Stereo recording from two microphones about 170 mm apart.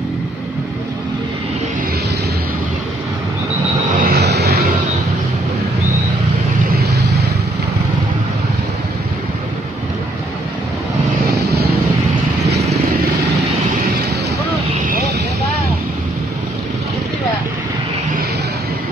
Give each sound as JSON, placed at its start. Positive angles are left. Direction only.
{"t": 4.0, "sound": "vehicle", "side_deg": -70}